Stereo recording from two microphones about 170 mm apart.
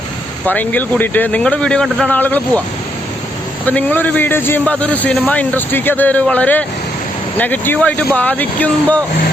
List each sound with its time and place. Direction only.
0.4 s a man's voice: 10° left (ahead or behind)
3.7 s a man's voice: 10° left (ahead or behind)